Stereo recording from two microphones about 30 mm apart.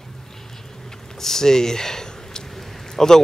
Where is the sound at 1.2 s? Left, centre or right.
Centre.